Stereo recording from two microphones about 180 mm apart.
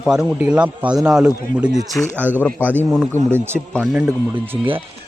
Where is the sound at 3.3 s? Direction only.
15° right (ahead or behind).